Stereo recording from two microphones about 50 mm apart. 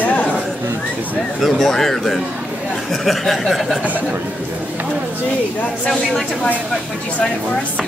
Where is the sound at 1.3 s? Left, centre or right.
Centre.